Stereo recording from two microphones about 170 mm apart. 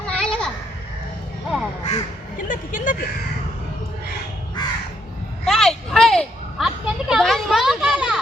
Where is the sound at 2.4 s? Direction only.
50° left (ahead or behind).